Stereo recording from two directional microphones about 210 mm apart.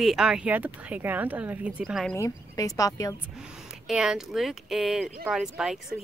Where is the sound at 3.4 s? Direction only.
5° right (ahead or behind).